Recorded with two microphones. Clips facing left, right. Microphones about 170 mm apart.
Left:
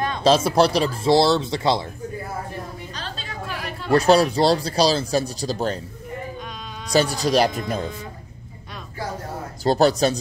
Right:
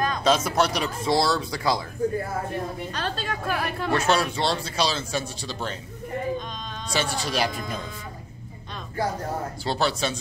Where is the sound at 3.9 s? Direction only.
35° left (ahead or behind).